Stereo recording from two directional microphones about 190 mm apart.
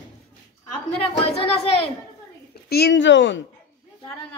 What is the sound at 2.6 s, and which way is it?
Speech, 60° left (ahead or behind).